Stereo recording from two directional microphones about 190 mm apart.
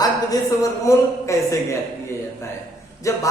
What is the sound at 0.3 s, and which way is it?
Speech, 15° left (ahead or behind).